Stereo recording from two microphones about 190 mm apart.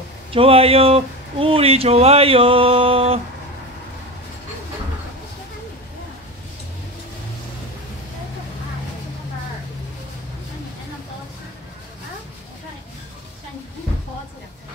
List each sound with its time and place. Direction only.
0.3 s speech: 30° right (ahead or behind)